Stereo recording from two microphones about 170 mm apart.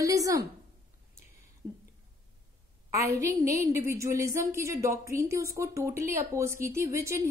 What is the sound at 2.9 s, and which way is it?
A woman's voice, 20° right (ahead or behind).